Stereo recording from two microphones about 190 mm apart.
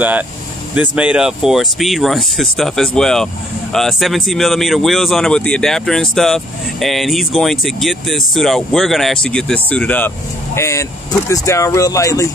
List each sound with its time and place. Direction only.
0.7 s speech: 5° right (ahead or behind); by 12.3 s 15° left (ahead or behind)